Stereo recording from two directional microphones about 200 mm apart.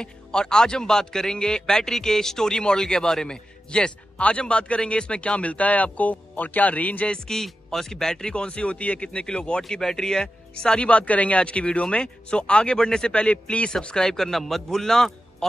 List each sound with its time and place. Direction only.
0.0 s speech: 5° left (ahead or behind)